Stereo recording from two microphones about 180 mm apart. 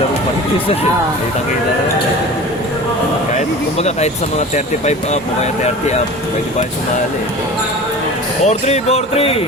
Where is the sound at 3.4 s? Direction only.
40° left (ahead or behind).